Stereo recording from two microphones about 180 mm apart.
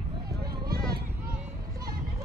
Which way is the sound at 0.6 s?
55° right (ahead or behind).